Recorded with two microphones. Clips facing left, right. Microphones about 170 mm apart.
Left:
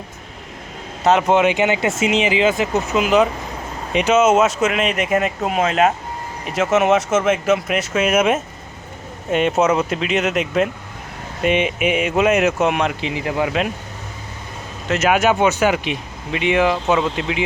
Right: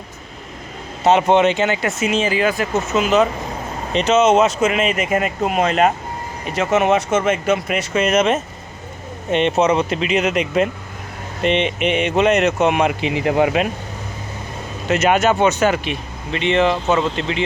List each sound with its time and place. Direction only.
1.1 s speech: 5° left (ahead or behind)
13.0 s speech: 15° right (ahead or behind)
14.8 s speech: centre (ahead or behind)